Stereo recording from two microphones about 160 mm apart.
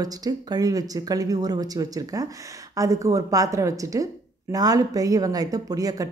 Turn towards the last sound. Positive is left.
turn(degrees=-20)  # may be behind; listen again after turning